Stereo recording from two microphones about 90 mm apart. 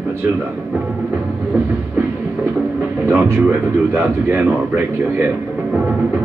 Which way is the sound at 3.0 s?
25° right (ahead or behind).